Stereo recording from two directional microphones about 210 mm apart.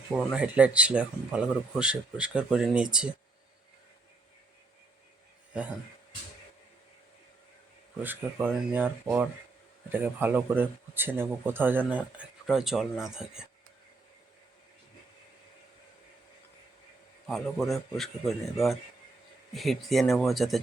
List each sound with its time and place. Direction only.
0.1 s speech: centre (ahead or behind)
8.0 s speech: 10° right (ahead or behind)
17.2 s speech: centre (ahead or behind)
19.5 s speech: centre (ahead or behind)